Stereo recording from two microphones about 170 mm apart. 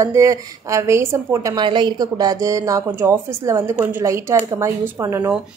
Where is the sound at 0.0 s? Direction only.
20° right (ahead or behind).